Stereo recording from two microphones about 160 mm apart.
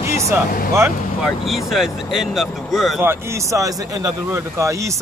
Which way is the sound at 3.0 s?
15° right (ahead or behind).